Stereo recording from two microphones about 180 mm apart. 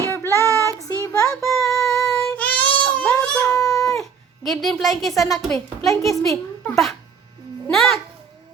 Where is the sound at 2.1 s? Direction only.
10° left (ahead or behind).